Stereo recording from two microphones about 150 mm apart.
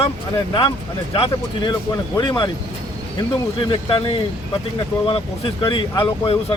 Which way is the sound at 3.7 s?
35° left (ahead or behind).